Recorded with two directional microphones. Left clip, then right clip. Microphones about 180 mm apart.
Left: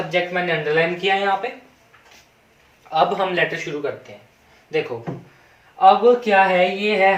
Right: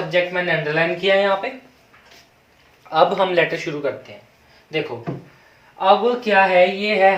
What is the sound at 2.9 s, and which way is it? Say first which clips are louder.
Speech: right 3 dB; 25° right (ahead or behind).